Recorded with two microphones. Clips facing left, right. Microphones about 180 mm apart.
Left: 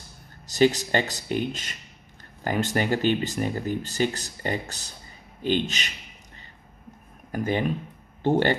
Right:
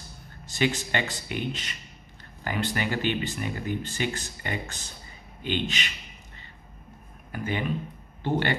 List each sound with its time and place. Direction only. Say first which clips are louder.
0.5 s speech: left 6 dB; 40° left (ahead or behind)
7.3 s speech: left 4 dB; 40° left (ahead or behind)